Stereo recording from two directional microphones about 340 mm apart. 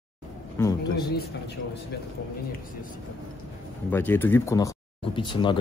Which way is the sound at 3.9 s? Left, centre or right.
Centre.